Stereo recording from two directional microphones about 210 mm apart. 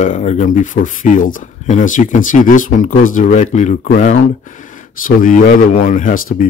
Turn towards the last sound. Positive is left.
turn(degrees=40)  # may be behind; listen again after turning